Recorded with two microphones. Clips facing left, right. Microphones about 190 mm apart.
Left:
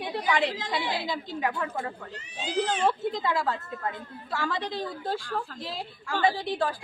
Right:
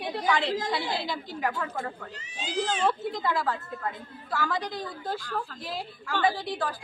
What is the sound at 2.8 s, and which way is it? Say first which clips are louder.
A woman's voice: left 1 dB; 20° left (ahead or behind).